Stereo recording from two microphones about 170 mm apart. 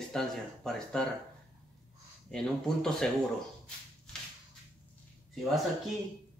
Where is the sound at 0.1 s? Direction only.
5° left (ahead or behind).